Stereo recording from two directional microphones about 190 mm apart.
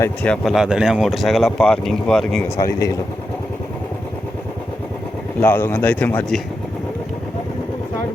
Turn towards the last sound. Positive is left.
turn(degrees=10)  # may be behind; listen again after turning